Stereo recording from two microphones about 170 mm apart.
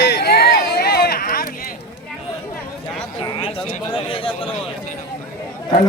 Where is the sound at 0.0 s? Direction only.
70° left (ahead or behind).